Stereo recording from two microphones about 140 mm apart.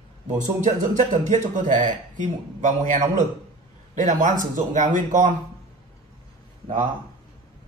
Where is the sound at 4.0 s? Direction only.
65° right (ahead or behind).